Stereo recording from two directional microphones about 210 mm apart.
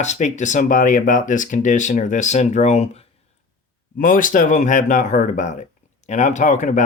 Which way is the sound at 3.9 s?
40° left (ahead or behind).